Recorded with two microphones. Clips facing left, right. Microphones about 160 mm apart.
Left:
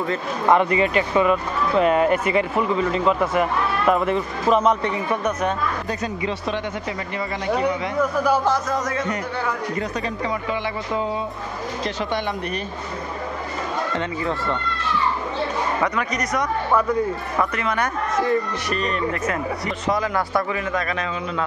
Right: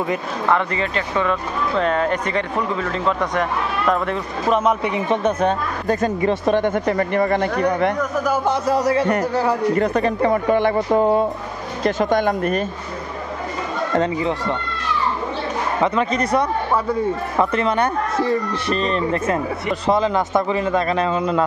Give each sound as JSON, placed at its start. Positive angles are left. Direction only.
{"t": 0.5, "sound": "speech", "side_deg": 15}
{"t": 4.9, "sound": "speech", "side_deg": -25}
{"t": 5.9, "sound": "speech", "side_deg": -50}
{"t": 7.4, "sound": "speech", "side_deg": 10}
{"t": 8.6, "sound": "speech", "side_deg": -35}
{"t": 9.8, "sound": "speech", "side_deg": -55}
{"t": 15.8, "sound": "speech", "side_deg": -25}